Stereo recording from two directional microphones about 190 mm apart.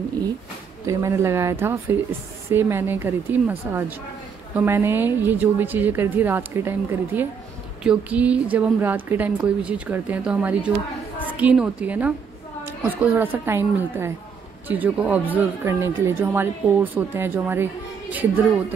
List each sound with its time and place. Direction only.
0.8 s speech: 15° right (ahead or behind)